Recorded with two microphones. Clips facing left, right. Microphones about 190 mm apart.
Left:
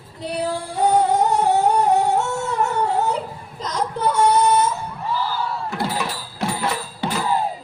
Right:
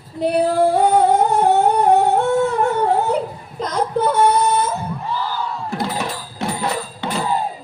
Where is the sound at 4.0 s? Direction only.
55° right (ahead or behind).